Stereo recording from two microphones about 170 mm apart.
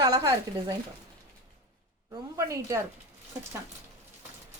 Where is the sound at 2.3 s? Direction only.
20° right (ahead or behind).